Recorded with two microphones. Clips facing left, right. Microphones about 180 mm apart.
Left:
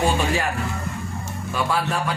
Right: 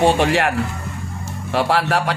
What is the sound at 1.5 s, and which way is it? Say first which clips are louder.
Speech: right 6 dB; 75° right (ahead or behind).